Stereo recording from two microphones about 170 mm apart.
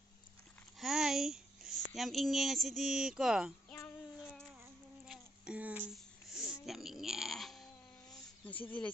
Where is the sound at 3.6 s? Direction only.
10° left (ahead or behind).